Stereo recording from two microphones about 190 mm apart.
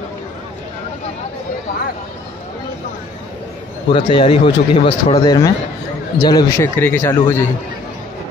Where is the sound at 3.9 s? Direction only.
25° left (ahead or behind).